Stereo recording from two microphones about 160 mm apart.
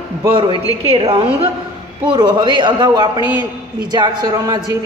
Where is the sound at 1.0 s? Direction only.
35° right (ahead or behind).